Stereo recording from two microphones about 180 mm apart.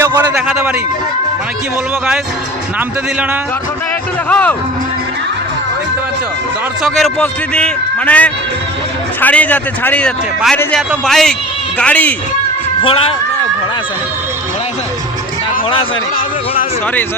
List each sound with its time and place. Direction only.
0.2 s a sound: 5° right (ahead or behind)
4.3 s speech: 10° left (ahead or behind)
6.8 s a man's voice: centre (ahead or behind)
12.8 s speech: 30° left (ahead or behind)